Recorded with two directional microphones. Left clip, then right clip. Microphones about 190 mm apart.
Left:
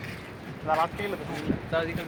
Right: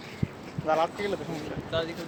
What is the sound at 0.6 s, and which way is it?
Speech, 55° right (ahead or behind).